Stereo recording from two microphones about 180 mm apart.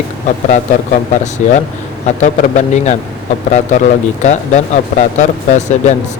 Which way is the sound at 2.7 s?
40° left (ahead or behind).